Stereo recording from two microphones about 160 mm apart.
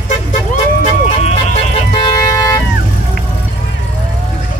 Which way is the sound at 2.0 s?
20° left (ahead or behind).